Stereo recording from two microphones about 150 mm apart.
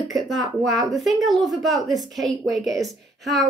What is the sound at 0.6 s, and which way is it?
A woman's voice, centre (ahead or behind).